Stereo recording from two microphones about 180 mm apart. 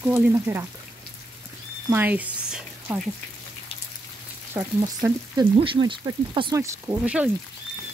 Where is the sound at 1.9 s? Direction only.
10° right (ahead or behind).